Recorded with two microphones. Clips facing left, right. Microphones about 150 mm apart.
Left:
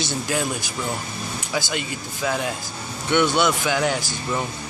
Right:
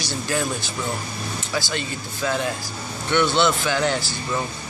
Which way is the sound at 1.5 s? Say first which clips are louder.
Left 1 dB; 15° left (ahead or behind).